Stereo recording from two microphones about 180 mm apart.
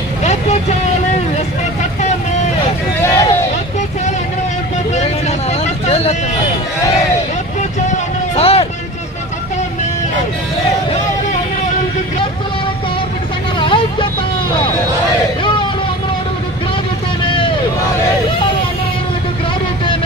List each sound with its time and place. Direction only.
0.2 s vehicle: 40° left (ahead or behind)
3.0 s vehicle: 15° left (ahead or behind)
5.9 s a sound: 35° left (ahead or behind)
8.4 s vehicle: 35° left (ahead or behind)
13.6 s vehicle: 30° left (ahead or behind)